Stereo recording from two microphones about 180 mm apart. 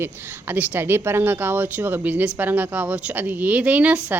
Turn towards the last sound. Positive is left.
turn(degrees=-5)  # may be behind; listen again after turning